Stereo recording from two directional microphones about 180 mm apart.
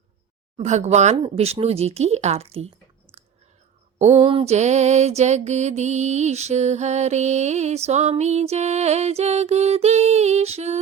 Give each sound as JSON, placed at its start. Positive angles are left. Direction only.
{"t": 0.5, "sound": "music", "side_deg": -40}
{"t": 1.1, "sound": "speech", "side_deg": -30}
{"t": 4.2, "sound": "music", "side_deg": -30}